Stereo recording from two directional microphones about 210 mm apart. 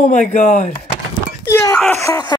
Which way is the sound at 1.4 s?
10° left (ahead or behind).